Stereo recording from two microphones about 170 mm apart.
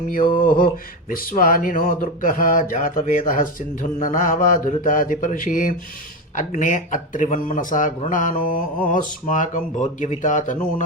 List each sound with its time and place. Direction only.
0.1 s speech: 55° left (ahead or behind)